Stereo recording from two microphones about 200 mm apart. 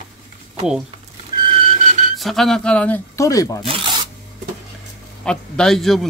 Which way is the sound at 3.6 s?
25° right (ahead or behind).